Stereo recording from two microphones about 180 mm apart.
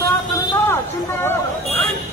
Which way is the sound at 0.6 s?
15° left (ahead or behind).